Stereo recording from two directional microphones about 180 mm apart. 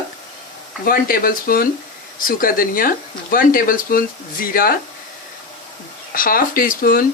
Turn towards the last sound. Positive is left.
turn(degrees=55)  # may be behind; listen again after turning